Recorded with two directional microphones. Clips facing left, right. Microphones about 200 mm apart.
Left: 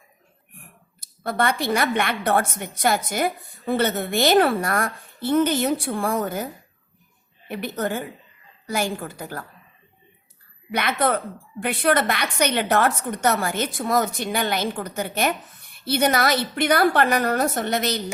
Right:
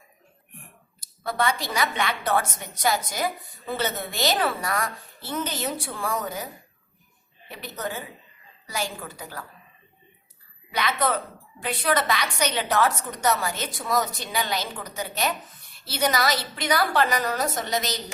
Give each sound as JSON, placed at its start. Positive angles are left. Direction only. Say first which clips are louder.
{"t": 0.9, "sound": "a woman's voice", "louder": "left 3 dB", "side_deg": 60}
{"t": 10.7, "sound": "a woman's voice", "louder": "left 3 dB", "side_deg": 55}